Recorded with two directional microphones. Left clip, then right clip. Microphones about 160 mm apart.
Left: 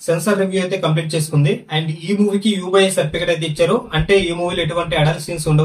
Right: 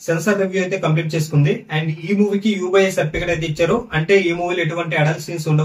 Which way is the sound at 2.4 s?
5° left (ahead or behind).